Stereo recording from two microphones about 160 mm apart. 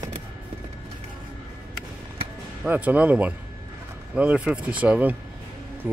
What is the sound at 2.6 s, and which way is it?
Speech, 10° right (ahead or behind).